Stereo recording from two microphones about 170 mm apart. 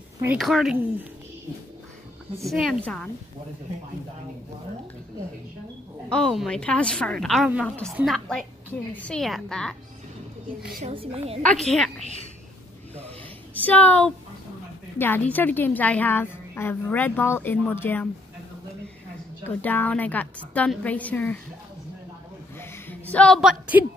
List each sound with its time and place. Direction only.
0.4 s a woman's voice: centre (ahead or behind)
2.5 s a woman's voice: centre (ahead or behind)
6.0 s a woman's voice: 5° left (ahead or behind)
10.9 s a woman's voice: 35° right (ahead or behind)
11.4 s a woman's voice: centre (ahead or behind)
13.7 s a woman's voice: 10° left (ahead or behind)
19.4 s a woman's voice: 10° left (ahead or behind)
22.6 s a sound: 10° left (ahead or behind)